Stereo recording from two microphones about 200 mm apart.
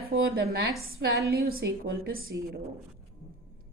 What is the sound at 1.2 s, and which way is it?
A woman's voice, 55° right (ahead or behind).